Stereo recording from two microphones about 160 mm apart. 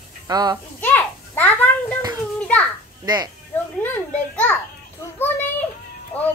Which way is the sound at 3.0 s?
25° right (ahead or behind).